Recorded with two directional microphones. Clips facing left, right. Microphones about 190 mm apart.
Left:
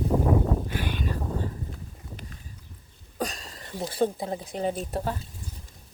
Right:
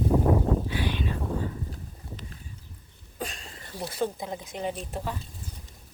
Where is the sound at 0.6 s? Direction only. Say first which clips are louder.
Right 1 dB; 50° left (ahead or behind).